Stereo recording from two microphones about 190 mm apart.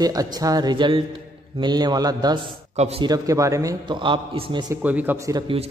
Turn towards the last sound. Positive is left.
turn(degrees=-15)  # may be behind; listen again after turning